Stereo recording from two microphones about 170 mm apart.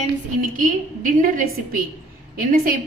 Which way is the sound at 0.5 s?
55° right (ahead or behind).